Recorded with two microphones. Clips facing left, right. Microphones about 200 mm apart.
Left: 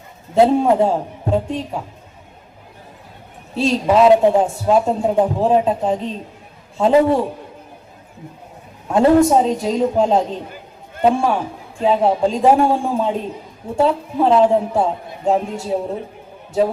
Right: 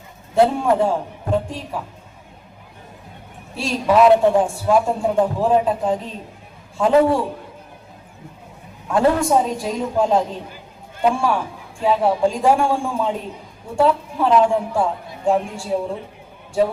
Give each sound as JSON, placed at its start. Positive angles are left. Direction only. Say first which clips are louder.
{"t": 0.3, "sound": "a man's voice", "louder": "left 3 dB", "side_deg": 25}
{"t": 3.5, "sound": "a man's voice", "louder": "left 2 dB", "side_deg": 25}
{"t": 8.9, "sound": "a man's voice", "louder": "left 4 dB", "side_deg": 25}